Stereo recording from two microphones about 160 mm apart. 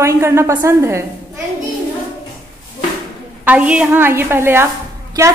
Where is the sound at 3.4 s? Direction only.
10° right (ahead or behind).